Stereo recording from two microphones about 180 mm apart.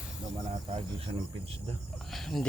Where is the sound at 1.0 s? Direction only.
35° right (ahead or behind).